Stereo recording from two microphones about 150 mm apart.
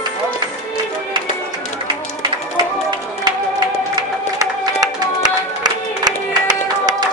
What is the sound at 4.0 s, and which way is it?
Music, 25° right (ahead or behind).